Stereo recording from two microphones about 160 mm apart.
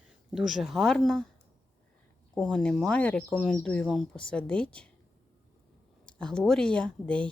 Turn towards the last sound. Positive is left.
turn(degrees=5)  # may be behind; listen again after turning